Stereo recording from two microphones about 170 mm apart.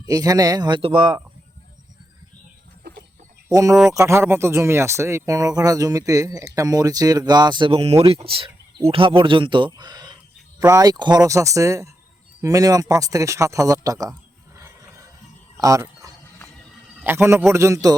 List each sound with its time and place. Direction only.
0.1 s speech: 20° right (ahead or behind)
3.5 s speech: 20° right (ahead or behind)
14.6 s a sound: 15° right (ahead or behind)
17.0 s a man's voice: 15° right (ahead or behind)